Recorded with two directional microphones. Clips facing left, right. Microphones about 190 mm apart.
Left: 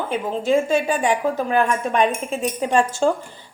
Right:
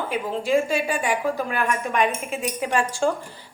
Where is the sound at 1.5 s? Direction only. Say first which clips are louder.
Left 4 dB; 25° left (ahead or behind).